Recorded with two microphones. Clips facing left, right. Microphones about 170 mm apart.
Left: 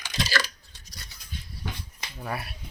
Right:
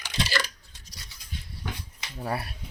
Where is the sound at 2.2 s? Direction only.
35° right (ahead or behind).